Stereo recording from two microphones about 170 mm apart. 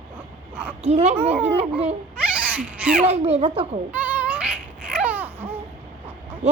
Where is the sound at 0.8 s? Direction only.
40° right (ahead or behind).